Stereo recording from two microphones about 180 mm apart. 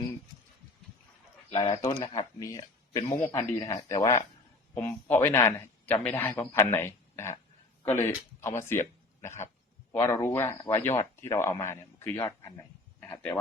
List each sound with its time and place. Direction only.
1.5 s speech: 25° left (ahead or behind)
3.0 s a man's voice: 40° left (ahead or behind)
3.2 s a man's voice: 15° left (ahead or behind)
13.0 s a sound: 10° left (ahead or behind)